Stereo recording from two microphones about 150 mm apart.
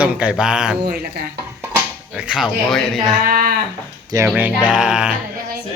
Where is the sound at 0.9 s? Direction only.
90° right.